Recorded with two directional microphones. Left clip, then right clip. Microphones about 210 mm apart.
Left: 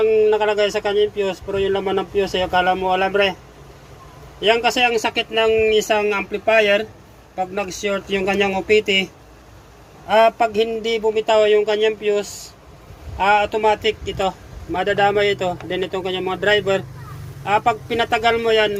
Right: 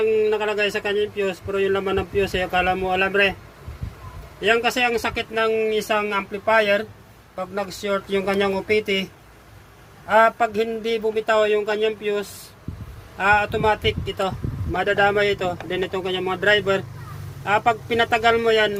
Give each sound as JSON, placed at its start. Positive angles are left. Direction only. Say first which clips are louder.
{"t": 0.1, "sound": "speech", "louder": "left 4 dB", "side_deg": -15}
{"t": 4.4, "sound": "speech", "louder": "left 3 dB", "side_deg": -15}
{"t": 10.1, "sound": "speech", "louder": "left 2 dB", "side_deg": -20}
{"t": 13.1, "sound": "speech", "louder": "left 2 dB", "side_deg": -20}